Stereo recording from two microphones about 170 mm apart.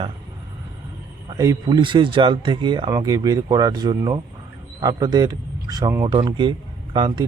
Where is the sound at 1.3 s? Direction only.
20° right (ahead or behind).